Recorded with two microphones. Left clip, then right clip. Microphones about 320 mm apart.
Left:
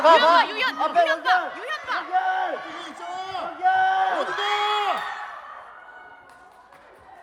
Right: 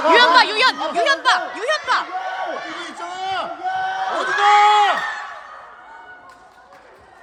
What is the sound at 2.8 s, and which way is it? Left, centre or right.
Run, right.